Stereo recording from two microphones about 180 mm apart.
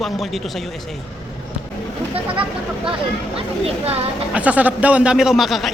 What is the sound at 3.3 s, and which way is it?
Speech, 35° right (ahead or behind).